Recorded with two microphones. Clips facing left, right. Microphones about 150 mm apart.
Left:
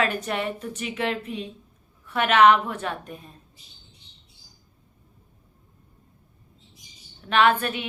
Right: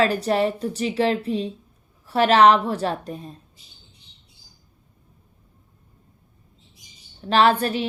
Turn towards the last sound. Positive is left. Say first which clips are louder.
# right 3 dB
turn(degrees=-35)  # may be behind; listen again after turning